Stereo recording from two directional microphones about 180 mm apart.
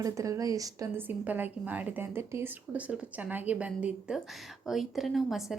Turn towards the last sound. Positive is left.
turn(degrees=0)  # may be behind; listen again after turning